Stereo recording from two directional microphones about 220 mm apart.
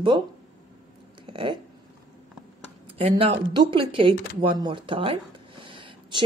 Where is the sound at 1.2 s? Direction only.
25° right (ahead or behind).